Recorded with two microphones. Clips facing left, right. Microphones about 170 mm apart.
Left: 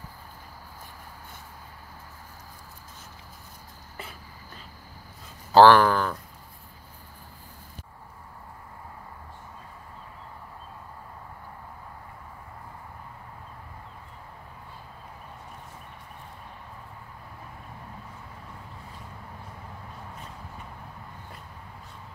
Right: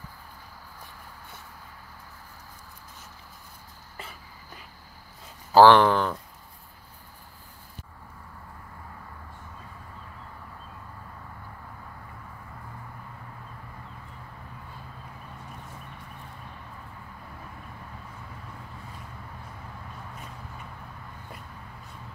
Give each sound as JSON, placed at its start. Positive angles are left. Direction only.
{"t": 5.5, "sound": "speech", "side_deg": -10}
{"t": 5.8, "sound": "speech", "side_deg": -25}